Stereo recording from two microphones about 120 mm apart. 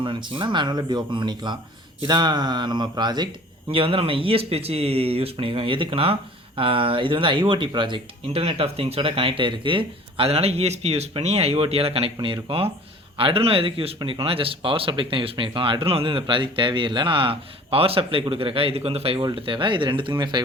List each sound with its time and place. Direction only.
0.0 s speech: 45° right (ahead or behind)
3.7 s speech: 50° right (ahead or behind)